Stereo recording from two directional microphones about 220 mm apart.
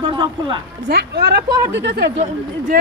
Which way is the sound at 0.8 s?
45° right (ahead or behind).